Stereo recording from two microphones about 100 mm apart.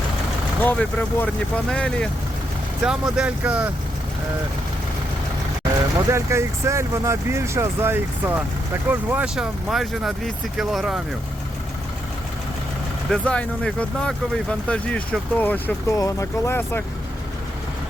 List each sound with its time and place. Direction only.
0.6 s speech: 15° left (ahead or behind)
2.8 s speech: 5° right (ahead or behind)
6.1 s speech: 30° right (ahead or behind)
9.3 s speech: 5° right (ahead or behind)
13.1 s speech: 10° left (ahead or behind)
16.0 s speech: 35° left (ahead or behind)